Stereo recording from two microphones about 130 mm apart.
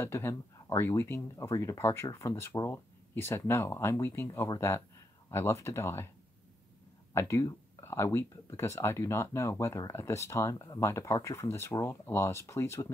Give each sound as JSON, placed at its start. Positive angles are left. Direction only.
{"t": 0.0, "sound": "speech", "side_deg": 20}
{"t": 7.2, "sound": "speech", "side_deg": 25}